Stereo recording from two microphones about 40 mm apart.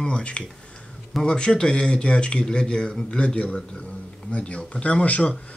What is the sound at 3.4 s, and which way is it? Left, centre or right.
Speech, left.